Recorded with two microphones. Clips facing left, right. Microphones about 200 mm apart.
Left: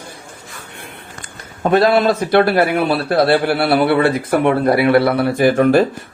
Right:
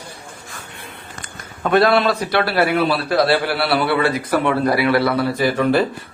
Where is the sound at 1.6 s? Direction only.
25° left (ahead or behind).